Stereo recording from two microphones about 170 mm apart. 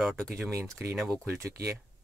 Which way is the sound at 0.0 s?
Centre (ahead or behind).